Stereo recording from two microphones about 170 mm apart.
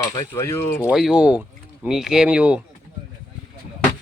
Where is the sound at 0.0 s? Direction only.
20° left (ahead or behind).